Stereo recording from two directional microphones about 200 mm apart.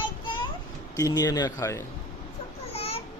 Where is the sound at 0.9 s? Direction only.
15° left (ahead or behind).